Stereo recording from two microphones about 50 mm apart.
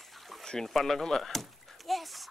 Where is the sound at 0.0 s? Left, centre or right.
Centre.